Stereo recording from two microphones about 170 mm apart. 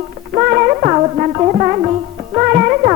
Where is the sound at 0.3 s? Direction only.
30° right (ahead or behind).